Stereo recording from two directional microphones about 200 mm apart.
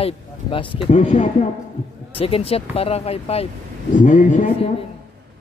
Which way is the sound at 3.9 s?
40° left (ahead or behind).